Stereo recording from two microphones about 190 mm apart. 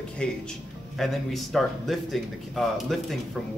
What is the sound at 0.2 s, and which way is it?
A man's voice, 5° left (ahead or behind).